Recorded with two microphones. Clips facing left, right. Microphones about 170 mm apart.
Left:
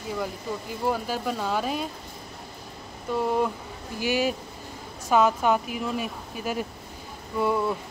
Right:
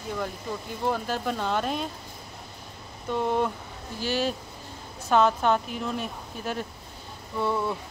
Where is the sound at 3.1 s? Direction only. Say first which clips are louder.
Left 1 dB; 5° left (ahead or behind).